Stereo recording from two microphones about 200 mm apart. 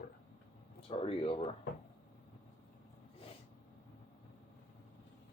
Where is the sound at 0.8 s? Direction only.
30° left (ahead or behind).